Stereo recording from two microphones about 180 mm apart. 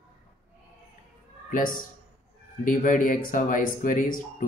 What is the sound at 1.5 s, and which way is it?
Speech, 50° left (ahead or behind).